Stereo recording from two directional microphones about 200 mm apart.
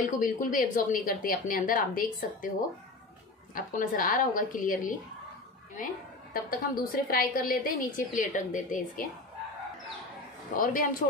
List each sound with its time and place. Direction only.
0.0 s a woman's voice: 40° left (ahead or behind)
3.5 s a woman's voice: 40° left (ahead or behind)
6.3 s a woman's voice: 45° left (ahead or behind)
10.5 s a woman's voice: 45° left (ahead or behind)